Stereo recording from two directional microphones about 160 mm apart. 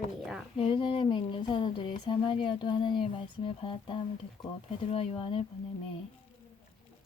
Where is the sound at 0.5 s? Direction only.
30° left (ahead or behind).